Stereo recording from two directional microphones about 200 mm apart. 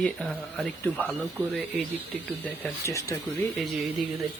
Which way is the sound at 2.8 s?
15° left (ahead or behind).